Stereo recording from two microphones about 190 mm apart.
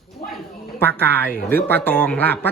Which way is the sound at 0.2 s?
40° left (ahead or behind).